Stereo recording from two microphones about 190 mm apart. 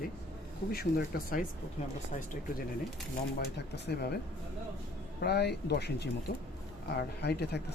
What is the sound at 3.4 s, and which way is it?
Speech, 55° left (ahead or behind).